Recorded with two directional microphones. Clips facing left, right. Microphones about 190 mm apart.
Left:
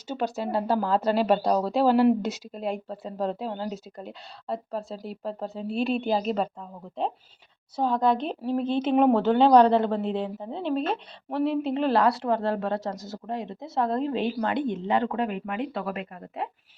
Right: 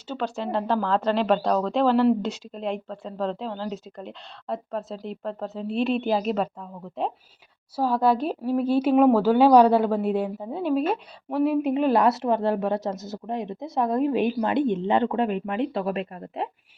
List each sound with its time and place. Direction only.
0.2 s a woman's voice: 10° left (ahead or behind); by 16.5 s 25° right (ahead or behind)